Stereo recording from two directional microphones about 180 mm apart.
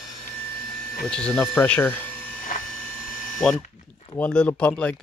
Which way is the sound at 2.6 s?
5° left (ahead or behind).